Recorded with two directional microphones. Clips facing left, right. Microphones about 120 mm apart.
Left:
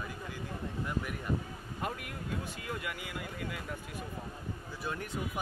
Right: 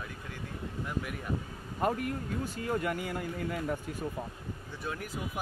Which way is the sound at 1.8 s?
40° right (ahead or behind).